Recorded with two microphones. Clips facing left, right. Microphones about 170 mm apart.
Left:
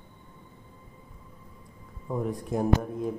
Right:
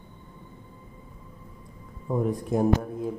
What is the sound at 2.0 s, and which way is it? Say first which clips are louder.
Speech: right 4 dB; 35° right (ahead or behind).